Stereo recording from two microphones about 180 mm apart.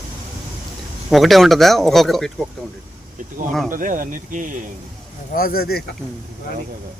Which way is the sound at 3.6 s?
50° right (ahead or behind).